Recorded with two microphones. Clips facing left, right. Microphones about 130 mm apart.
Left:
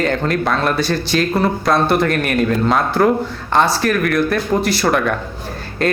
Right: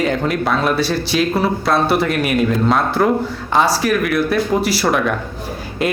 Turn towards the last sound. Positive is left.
turn(degrees=-5)  # may be behind; listen again after turning